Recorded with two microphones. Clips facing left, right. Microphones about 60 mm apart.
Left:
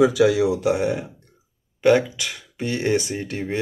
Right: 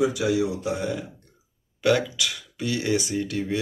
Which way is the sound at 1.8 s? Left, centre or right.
Left.